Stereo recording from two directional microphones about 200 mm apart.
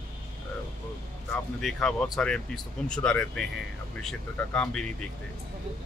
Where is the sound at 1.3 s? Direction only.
5° left (ahead or behind).